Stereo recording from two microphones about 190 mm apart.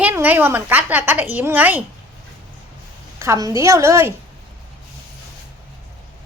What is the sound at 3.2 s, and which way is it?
Speech, 15° right (ahead or behind).